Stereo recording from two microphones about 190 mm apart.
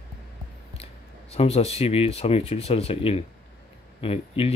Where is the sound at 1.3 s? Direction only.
30° left (ahead or behind).